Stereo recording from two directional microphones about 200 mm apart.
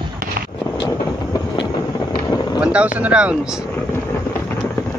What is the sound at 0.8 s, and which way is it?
Train, 20° left (ahead or behind).